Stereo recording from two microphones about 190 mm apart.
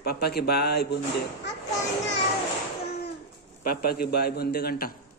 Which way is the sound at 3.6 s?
50° left (ahead or behind).